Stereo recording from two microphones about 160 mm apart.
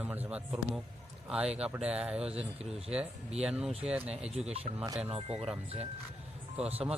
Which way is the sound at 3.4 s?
5° right (ahead or behind).